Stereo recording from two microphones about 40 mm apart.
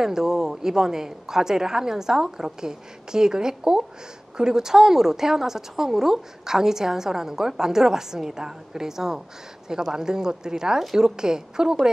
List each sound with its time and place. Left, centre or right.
0.0 s a woman's voice: centre